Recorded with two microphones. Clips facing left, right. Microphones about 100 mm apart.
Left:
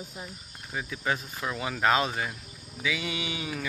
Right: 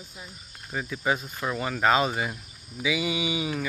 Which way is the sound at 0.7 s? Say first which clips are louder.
Right 3 dB; 5° right (ahead or behind).